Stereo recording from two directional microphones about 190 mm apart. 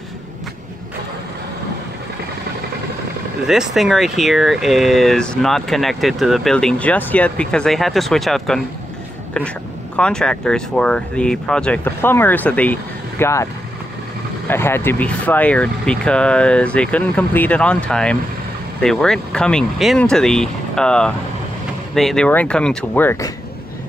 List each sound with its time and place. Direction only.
3.4 s speech: centre (ahead or behind)
9.9 s speech: 5° left (ahead or behind)
14.5 s speech: 10° left (ahead or behind)